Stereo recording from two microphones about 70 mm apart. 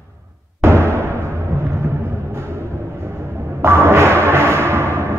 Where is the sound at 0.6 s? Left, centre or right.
Right.